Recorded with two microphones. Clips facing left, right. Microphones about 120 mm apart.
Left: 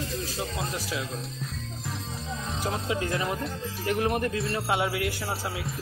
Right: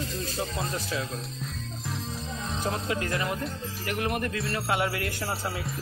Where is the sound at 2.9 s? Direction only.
20° left (ahead or behind).